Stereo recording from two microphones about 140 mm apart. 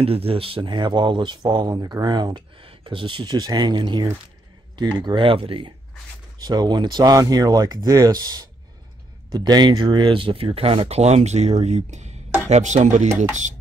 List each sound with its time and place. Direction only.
0.0 s speech: 45° right (ahead or behind)